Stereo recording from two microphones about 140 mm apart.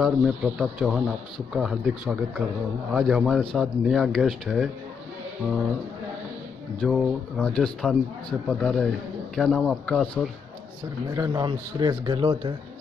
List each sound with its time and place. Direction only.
0.0 s speech: centre (ahead or behind)
6.8 s speech: 5° left (ahead or behind)
11.1 s a man's voice: 25° right (ahead or behind)